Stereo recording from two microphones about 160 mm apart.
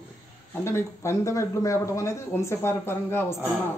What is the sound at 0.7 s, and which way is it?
A man's voice, 15° left (ahead or behind).